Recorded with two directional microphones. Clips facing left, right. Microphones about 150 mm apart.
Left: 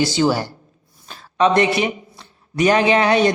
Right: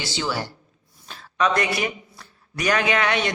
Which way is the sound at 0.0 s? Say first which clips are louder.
Left 10 dB; 45° left (ahead or behind).